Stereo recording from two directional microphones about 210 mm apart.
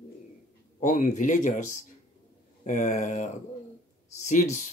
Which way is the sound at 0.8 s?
35° left (ahead or behind).